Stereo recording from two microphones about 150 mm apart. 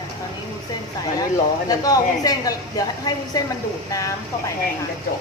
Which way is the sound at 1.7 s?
25° left (ahead or behind).